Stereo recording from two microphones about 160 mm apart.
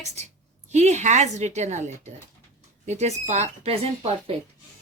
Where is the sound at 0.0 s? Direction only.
45° right (ahead or behind).